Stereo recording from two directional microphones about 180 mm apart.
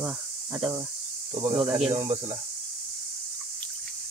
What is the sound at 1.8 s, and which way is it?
Speech, 30° right (ahead or behind).